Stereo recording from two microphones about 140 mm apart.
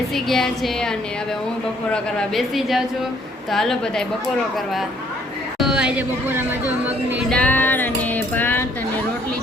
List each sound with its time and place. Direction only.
0.1 s speech: centre (ahead or behind)
5.5 s speech: 5° right (ahead or behind)
7.3 s music: 10° left (ahead or behind)